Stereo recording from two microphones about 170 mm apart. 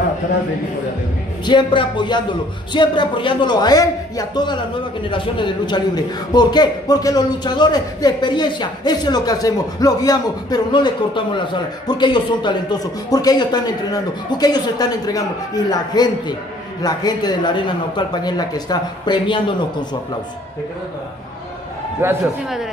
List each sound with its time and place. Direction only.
1.4 s speech: 25° left (ahead or behind)
22.0 s a man's voice: 15° right (ahead or behind)